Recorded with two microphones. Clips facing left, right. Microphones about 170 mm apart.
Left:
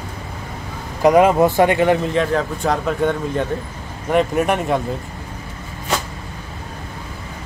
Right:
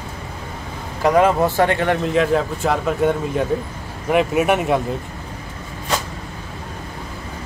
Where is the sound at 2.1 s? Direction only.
5° right (ahead or behind).